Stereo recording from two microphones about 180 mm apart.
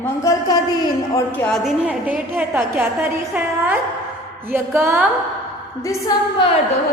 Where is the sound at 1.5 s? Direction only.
Centre (ahead or behind).